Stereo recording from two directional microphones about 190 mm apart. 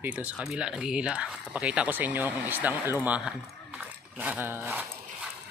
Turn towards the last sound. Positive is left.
turn(degrees=-10)  # may be behind; listen again after turning